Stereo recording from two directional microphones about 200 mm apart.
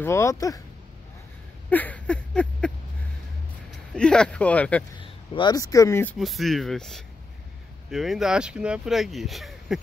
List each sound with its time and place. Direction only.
0.0 s speech: 15° left (ahead or behind)
1.7 s a sound: 10° left (ahead or behind)
3.9 s speech: 5° left (ahead or behind)
4.9 s speech: 25° left (ahead or behind)
6.1 s speech: centre (ahead or behind)